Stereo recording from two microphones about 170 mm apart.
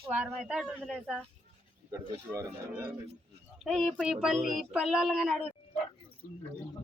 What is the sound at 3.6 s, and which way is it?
Speech, 5° left (ahead or behind).